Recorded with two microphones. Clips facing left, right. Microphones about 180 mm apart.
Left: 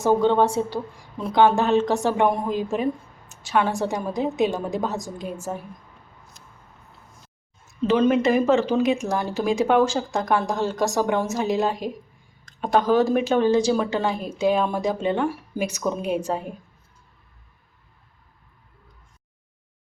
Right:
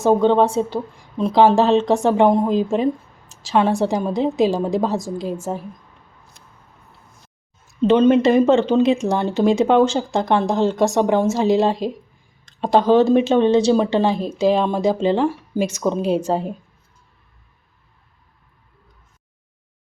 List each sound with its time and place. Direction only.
0.0 s speech: 25° right (ahead or behind)
7.9 s speech: 25° right (ahead or behind)